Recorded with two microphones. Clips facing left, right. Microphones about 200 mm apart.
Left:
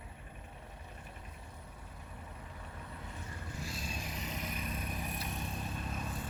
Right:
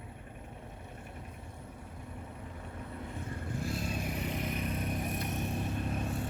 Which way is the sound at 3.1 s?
55° right (ahead or behind).